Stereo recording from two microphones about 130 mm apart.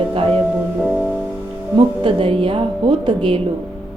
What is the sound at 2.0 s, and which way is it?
A woman's voice, 45° right (ahead or behind).